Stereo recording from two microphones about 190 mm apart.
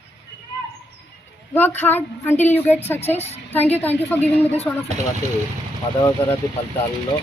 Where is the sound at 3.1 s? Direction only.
35° left (ahead or behind).